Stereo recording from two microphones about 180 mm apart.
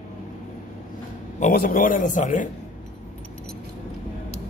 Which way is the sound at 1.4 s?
50° left (ahead or behind).